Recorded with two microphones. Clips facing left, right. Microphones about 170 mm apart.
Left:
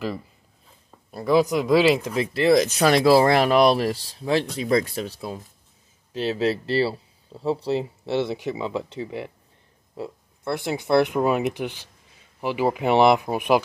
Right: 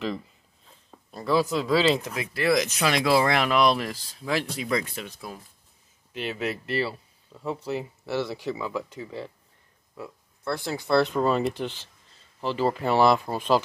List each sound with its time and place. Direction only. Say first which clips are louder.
1.1 s speech: left 4 dB; 15° left (ahead or behind)
2.1 s speech: left 6 dB; 25° left (ahead or behind)